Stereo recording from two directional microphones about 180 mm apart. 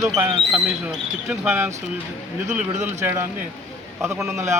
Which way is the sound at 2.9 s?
15° right (ahead or behind).